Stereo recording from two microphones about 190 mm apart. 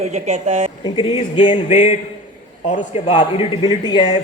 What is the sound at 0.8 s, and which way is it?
Speech, 25° left (ahead or behind).